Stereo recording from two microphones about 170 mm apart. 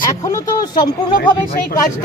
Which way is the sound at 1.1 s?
60° left (ahead or behind).